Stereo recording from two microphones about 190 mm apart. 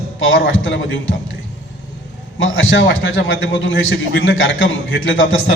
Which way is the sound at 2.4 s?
90° left.